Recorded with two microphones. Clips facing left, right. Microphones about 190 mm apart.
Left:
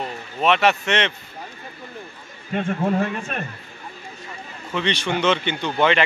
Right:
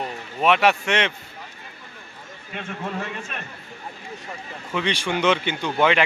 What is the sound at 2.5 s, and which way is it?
Speech, 45° left (ahead or behind).